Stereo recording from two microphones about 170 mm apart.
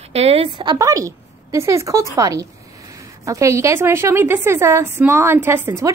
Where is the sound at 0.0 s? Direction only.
35° right (ahead or behind).